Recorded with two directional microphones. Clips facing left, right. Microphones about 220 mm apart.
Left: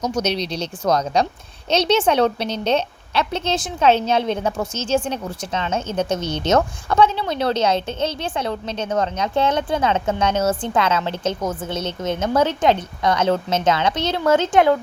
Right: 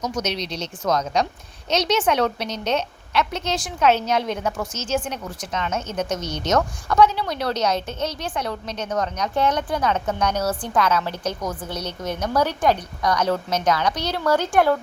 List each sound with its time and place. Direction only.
0.0 s a woman's voice: 30° left (ahead or behind)